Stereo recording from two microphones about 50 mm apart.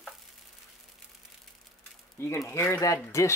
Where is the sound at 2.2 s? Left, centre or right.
Left.